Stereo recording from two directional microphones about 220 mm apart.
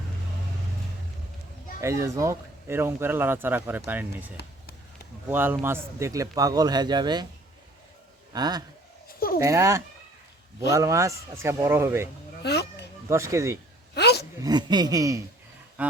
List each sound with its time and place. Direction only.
1.8 s speech: 15° right (ahead or behind)
5.3 s speech: 10° right (ahead or behind)
8.3 s a man's voice: 20° right (ahead or behind)
9.0 s a sound: 40° left (ahead or behind)
9.4 s speech: 15° right (ahead or behind)
12.4 s a sound: 50° left (ahead or behind)
13.1 s speech: 10° right (ahead or behind)
13.9 s a sound: 50° left (ahead or behind)
14.4 s speech: 20° right (ahead or behind)